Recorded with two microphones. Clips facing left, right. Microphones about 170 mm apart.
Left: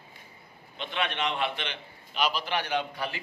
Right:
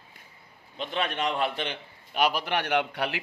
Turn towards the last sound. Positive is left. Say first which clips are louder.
# right 4 dB
turn(degrees=-70)  # may be behind; listen again after turning